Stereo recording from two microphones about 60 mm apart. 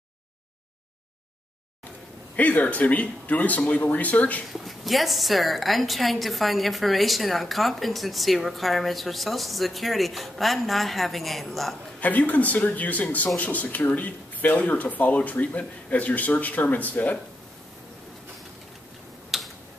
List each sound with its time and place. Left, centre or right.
2.3 s speech: left
4.5 s a woman's voice: centre
12.0 s speech: left
19.3 s tick-tock: centre